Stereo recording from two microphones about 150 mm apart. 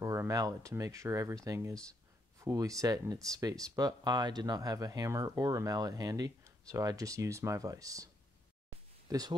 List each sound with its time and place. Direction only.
0.0 s speech: 20° right (ahead or behind)
9.1 s speech: 25° right (ahead or behind)